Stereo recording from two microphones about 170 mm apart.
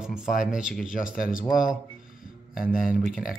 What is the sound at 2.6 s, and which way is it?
Speech, 55° left (ahead or behind).